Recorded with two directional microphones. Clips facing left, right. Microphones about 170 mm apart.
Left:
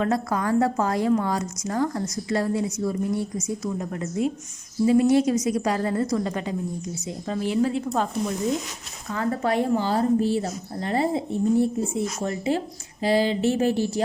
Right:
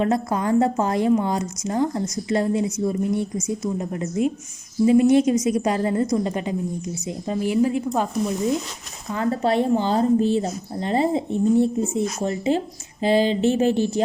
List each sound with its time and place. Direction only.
0.0 s a woman's voice: 20° right (ahead or behind)
9.1 s a woman's voice: 25° right (ahead or behind)